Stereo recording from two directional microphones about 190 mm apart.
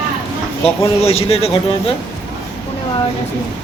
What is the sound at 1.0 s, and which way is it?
Speech, 30° left (ahead or behind).